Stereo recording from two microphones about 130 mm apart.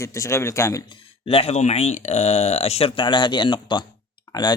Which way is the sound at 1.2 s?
50° left (ahead or behind).